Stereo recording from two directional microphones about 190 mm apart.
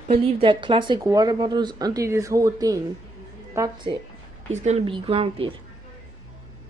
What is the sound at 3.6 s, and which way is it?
Speech, 15° right (ahead or behind).